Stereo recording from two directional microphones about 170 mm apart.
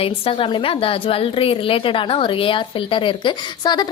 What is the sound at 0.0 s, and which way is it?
A woman's voice, 35° left (ahead or behind).